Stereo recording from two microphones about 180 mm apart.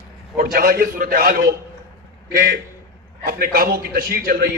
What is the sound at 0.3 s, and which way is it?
A man's voice, 55° right (ahead or behind).